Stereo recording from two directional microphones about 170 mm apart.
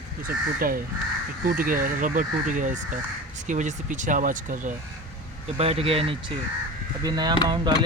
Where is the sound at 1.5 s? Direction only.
55° right (ahead or behind).